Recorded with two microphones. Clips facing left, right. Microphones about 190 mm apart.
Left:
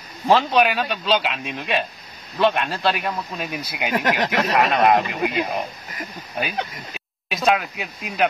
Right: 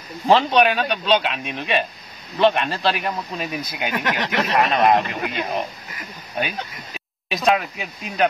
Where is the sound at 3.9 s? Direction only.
40° left (ahead or behind).